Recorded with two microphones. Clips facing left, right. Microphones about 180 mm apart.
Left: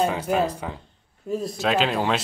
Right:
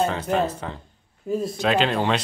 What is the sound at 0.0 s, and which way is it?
Speech, 10° left (ahead or behind).